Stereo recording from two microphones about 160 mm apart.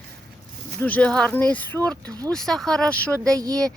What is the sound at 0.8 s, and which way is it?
Speech, 10° left (ahead or behind).